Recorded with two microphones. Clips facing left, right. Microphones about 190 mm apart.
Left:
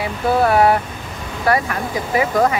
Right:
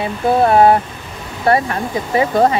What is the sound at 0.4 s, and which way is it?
Speech, 25° right (ahead or behind).